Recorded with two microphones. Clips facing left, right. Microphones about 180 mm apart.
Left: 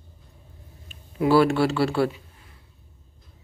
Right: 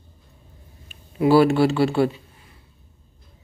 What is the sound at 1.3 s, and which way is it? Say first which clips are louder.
Speech: right 3 dB; 5° right (ahead or behind).